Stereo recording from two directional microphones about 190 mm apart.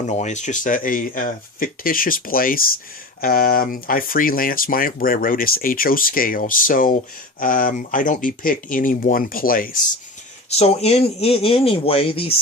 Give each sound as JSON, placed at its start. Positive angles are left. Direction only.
{"t": 0.1, "sound": "speech", "side_deg": 40}
{"t": 10.5, "sound": "speech", "side_deg": 35}